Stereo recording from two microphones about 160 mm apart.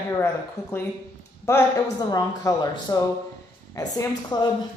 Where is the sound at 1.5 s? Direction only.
20° left (ahead or behind).